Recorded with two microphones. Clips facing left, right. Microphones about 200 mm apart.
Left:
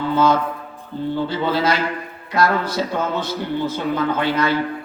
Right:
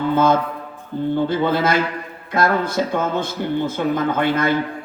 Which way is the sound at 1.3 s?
50° right (ahead or behind).